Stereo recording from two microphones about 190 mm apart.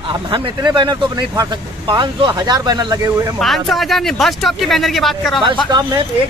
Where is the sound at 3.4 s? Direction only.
Centre (ahead or behind).